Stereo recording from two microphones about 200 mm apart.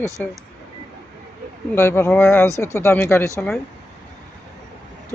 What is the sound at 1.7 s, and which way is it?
Speech, 10° left (ahead or behind).